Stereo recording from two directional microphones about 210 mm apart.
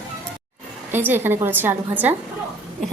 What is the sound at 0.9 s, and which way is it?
A woman's voice, 10° right (ahead or behind).